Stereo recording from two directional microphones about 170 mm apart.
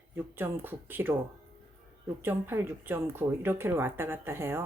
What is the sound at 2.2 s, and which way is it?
Speech, 15° right (ahead or behind).